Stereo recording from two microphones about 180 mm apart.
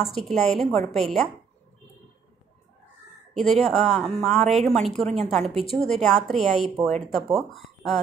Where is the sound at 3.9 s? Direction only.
Centre (ahead or behind).